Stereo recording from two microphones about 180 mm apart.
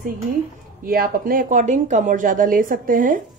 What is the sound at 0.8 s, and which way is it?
Speech, 55° right (ahead or behind).